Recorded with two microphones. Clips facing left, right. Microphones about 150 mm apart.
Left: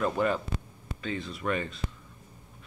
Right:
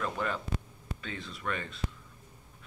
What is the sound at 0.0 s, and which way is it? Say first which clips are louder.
Speech: left 6 dB; 15° left (ahead or behind).